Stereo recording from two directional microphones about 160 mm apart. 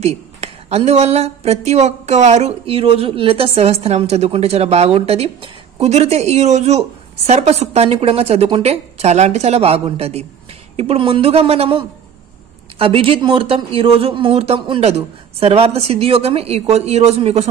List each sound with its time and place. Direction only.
0.0 s speech: 40° right (ahead or behind)